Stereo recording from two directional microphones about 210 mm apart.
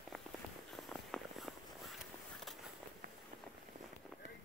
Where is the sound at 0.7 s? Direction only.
Centre (ahead or behind).